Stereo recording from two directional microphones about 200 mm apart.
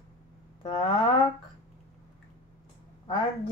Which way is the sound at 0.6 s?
25° left (ahead or behind).